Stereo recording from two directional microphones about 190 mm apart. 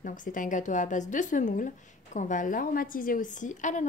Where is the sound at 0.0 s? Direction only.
45° left (ahead or behind).